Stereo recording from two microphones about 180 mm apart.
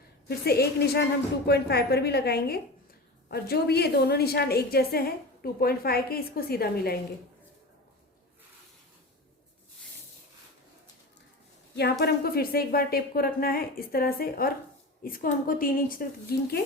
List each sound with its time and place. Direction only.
0.3 s a woman's voice: 60° left (ahead or behind)
11.8 s a woman's voice: 65° left (ahead or behind)